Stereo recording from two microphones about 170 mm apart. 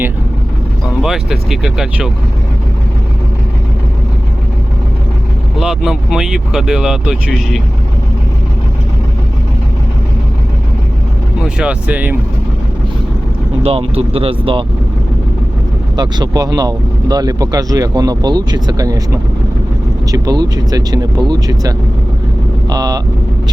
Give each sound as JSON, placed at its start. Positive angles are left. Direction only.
{"t": 1.0, "sound": "speech", "side_deg": -5}
{"t": 5.5, "sound": "speech", "side_deg": 0}
{"t": 11.4, "sound": "speech", "side_deg": -5}
{"t": 13.6, "sound": "speech", "side_deg": -35}
{"t": 16.0, "sound": "speech", "side_deg": -25}
{"t": 22.7, "sound": "speech", "side_deg": -20}